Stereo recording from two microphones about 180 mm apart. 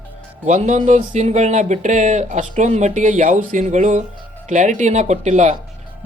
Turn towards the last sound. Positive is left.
turn(degrees=-40)  # may be behind; listen again after turning